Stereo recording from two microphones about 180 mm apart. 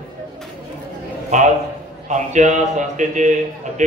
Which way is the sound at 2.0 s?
40° right (ahead or behind).